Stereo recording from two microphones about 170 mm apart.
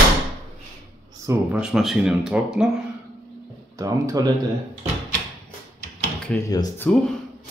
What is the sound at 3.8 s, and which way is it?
Speech, 20° right (ahead or behind).